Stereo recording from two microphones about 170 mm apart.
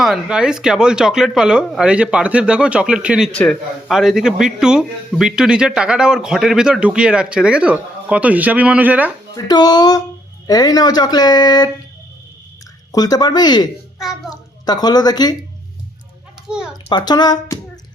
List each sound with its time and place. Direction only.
0.0 s a man's voice: 5° right (ahead or behind)
9.3 s speech: 25° left (ahead or behind)
12.9 s speech: 20° left (ahead or behind)
16.5 s a sound: 5° right (ahead or behind)
16.9 s speech: 25° left (ahead or behind)